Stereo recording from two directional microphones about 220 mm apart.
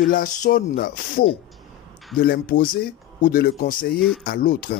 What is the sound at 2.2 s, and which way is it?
Speech, 45° left (ahead or behind).